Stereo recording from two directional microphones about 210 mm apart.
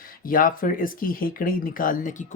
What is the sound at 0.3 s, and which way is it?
Speech, 40° left (ahead or behind).